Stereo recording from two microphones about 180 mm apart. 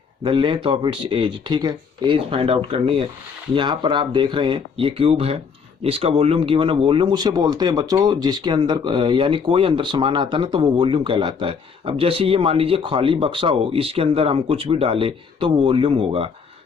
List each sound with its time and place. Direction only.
0.3 s speech: 25° right (ahead or behind)